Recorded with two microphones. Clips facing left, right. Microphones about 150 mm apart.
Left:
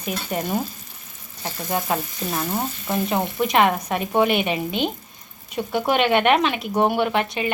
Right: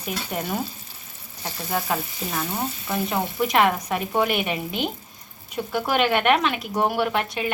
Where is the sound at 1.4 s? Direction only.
15° left (ahead or behind).